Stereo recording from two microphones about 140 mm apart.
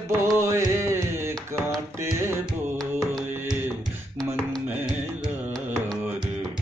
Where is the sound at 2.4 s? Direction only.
Centre (ahead or behind).